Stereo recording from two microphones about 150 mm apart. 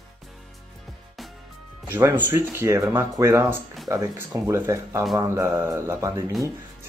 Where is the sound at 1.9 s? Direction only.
15° right (ahead or behind).